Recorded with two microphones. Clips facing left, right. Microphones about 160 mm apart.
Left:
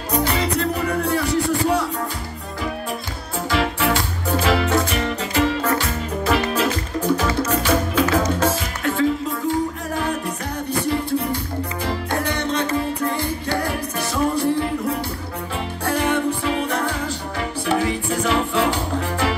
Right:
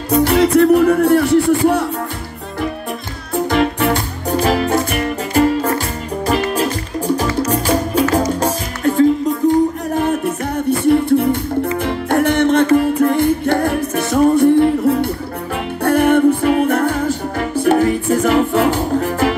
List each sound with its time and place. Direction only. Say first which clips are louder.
0.2 s music: right 12 dB; 65° right (ahead or behind)
3.4 s music: right 4 dB; 50° right (ahead or behind)
10.9 s music: right 11 dB; 60° right (ahead or behind)